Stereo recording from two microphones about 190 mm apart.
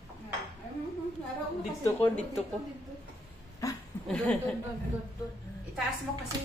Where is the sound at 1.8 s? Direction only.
5° left (ahead or behind).